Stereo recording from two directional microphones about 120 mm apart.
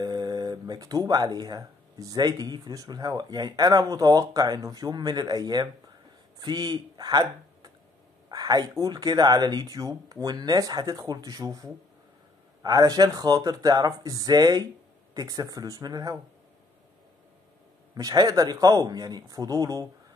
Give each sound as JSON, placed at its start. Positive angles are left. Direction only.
{"t": 0.0, "sound": "speech", "side_deg": -35}
{"t": 17.9, "sound": "speech", "side_deg": -30}